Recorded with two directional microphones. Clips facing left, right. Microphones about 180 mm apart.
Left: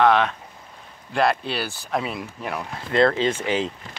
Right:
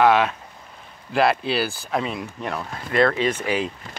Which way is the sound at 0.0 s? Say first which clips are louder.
Right 1 dB; 5° right (ahead or behind).